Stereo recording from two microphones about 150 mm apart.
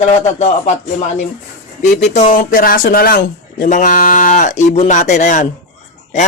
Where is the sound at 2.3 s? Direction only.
65° left (ahead or behind).